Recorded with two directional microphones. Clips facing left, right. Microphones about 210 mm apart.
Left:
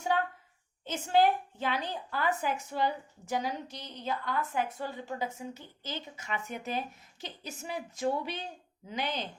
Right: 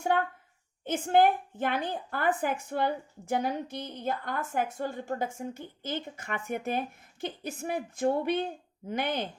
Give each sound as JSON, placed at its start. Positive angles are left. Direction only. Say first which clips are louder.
{"t": 0.9, "sound": "a woman's voice", "louder": "right 3 dB", "side_deg": -55}